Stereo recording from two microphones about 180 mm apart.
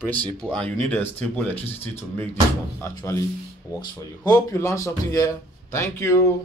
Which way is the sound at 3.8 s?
20° left (ahead or behind).